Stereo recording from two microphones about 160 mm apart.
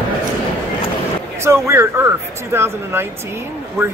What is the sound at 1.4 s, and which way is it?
Speech, 15° right (ahead or behind).